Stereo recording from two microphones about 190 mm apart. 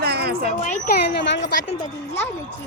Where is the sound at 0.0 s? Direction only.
55° right (ahead or behind).